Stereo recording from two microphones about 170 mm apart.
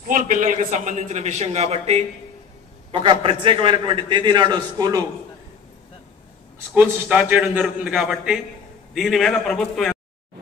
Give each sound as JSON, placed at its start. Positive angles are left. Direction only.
{"t": 0.1, "sound": "a man's voice", "side_deg": -50}
{"t": 6.7, "sound": "a man's voice", "side_deg": -10}